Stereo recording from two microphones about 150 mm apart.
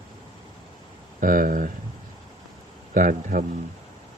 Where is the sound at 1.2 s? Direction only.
65° right (ahead or behind).